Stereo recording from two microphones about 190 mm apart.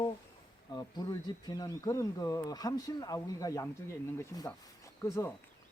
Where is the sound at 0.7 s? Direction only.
20° left (ahead or behind).